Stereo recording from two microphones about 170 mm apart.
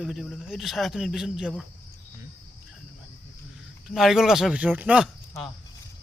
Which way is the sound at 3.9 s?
Centre (ahead or behind).